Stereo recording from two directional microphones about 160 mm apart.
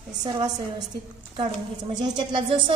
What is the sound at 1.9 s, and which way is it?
Speech, 30° right (ahead or behind).